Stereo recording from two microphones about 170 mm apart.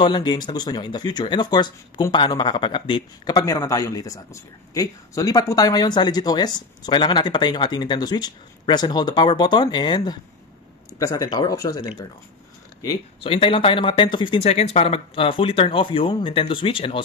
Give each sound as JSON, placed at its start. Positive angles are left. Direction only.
{"t": 0.0, "sound": "speech", "side_deg": 25}
{"t": 13.2, "sound": "speech", "side_deg": 30}